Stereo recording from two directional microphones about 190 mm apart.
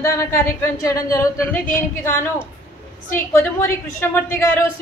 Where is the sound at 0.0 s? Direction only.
15° left (ahead or behind).